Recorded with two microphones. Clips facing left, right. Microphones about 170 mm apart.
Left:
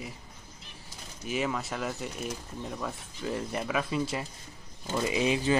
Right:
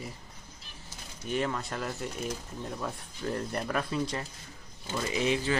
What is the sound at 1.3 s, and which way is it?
Speech, 5° left (ahead or behind).